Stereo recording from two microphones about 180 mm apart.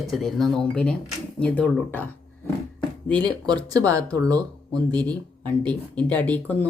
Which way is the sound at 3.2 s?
20° right (ahead or behind).